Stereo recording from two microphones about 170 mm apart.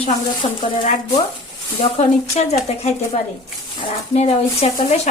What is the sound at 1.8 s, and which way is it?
Speech, 40° left (ahead or behind).